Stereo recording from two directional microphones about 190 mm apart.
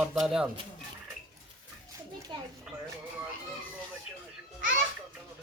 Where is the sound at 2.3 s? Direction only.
25° right (ahead or behind).